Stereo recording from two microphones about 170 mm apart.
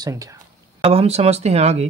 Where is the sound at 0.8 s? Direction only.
35° right (ahead or behind).